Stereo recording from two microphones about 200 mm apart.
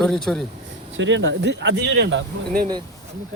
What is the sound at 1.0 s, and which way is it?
Speech, 65° right (ahead or behind).